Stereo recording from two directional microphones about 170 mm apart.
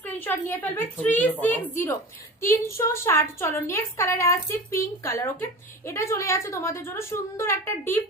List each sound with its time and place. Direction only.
0.0 s a woman's voice: 15° left (ahead or behind)